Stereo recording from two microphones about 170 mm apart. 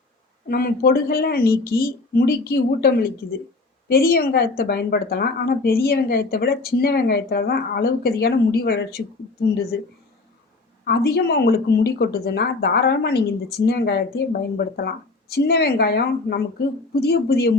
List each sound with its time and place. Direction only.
0.4 s a woman's voice: 60° left (ahead or behind)
10.8 s speech: 70° left (ahead or behind)